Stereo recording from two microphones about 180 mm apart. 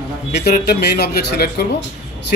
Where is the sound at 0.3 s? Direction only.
65° left (ahead or behind).